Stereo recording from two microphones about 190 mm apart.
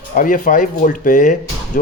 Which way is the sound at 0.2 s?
45° left (ahead or behind).